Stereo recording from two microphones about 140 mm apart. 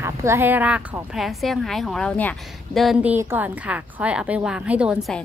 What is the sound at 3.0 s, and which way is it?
A woman's voice, 15° right (ahead or behind).